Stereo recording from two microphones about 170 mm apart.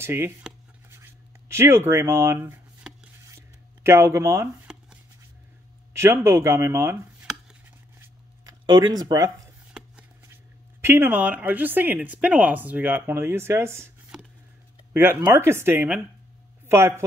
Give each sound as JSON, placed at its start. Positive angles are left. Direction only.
{"t": 0.0, "sound": "speech", "side_deg": -15}
{"t": 0.4, "sound": "writing", "side_deg": -10}
{"t": 3.3, "sound": "a sound", "side_deg": -15}
{"t": 5.9, "sound": "speech", "side_deg": -15}
{"t": 8.5, "sound": "speech", "side_deg": -25}
{"t": 9.8, "sound": "a sound", "side_deg": -5}
{"t": 10.2, "sound": "speech", "side_deg": -15}